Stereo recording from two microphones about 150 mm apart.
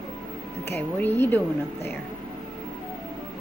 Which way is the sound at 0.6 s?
15° left (ahead or behind).